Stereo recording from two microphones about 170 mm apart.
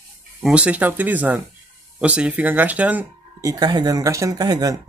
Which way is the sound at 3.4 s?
20° right (ahead or behind).